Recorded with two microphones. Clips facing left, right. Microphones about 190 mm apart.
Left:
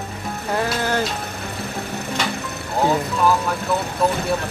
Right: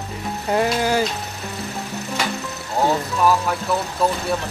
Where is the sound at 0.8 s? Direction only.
10° right (ahead or behind).